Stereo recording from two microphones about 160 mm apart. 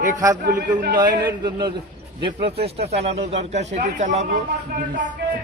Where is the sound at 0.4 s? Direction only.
75° right (ahead or behind).